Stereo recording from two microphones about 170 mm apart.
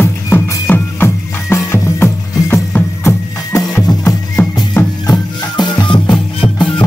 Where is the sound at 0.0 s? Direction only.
15° left (ahead or behind).